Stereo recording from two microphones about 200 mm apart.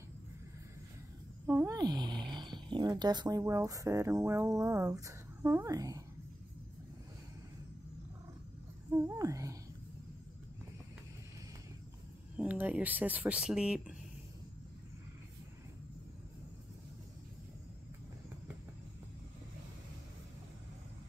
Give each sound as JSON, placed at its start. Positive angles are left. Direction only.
{"t": 1.4, "sound": "speech", "side_deg": -10}
{"t": 8.9, "sound": "speech", "side_deg": -15}
{"t": 12.4, "sound": "speech", "side_deg": -5}